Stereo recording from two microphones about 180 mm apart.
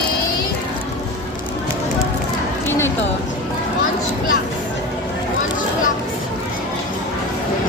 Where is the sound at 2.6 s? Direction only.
15° left (ahead or behind).